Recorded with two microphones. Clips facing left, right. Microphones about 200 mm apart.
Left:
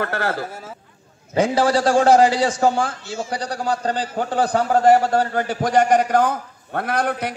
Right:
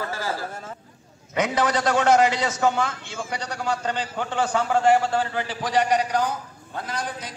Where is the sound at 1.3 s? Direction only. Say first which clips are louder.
Left 5 dB; 30° left (ahead or behind).